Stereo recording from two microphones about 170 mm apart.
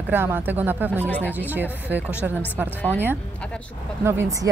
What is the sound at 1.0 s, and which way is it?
Speech, 10° left (ahead or behind).